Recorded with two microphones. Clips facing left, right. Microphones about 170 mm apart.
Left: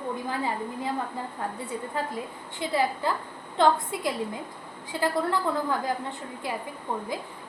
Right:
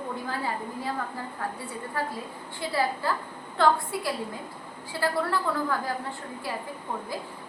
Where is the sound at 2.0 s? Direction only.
20° left (ahead or behind).